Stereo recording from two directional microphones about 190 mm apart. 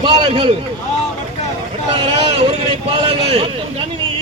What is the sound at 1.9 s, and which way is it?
A man's voice, 30° right (ahead or behind).